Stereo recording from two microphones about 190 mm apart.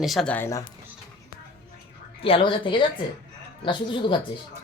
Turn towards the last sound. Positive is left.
turn(degrees=25)  # may be behind; listen again after turning